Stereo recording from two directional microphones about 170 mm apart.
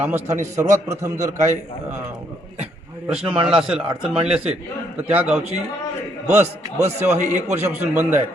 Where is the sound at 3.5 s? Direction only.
5° right (ahead or behind).